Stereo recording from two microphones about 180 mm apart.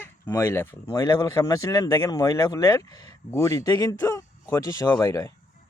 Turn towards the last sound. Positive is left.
turn(degrees=15)  # may be behind; listen again after turning